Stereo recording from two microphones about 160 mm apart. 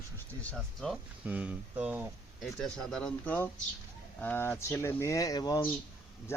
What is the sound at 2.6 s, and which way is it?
Speech, 5° left (ahead or behind).